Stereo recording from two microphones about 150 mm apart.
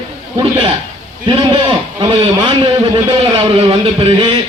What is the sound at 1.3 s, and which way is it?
A man's voice, 35° right (ahead or behind).